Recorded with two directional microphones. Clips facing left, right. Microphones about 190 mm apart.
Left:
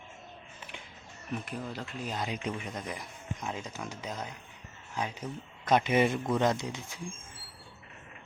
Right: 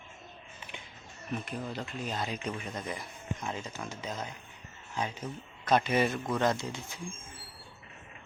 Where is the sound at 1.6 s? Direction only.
5° left (ahead or behind).